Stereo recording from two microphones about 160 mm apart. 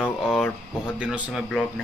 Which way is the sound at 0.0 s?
5° left (ahead or behind).